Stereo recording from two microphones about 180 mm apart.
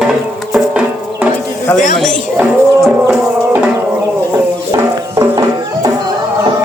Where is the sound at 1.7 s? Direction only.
45° left (ahead or behind).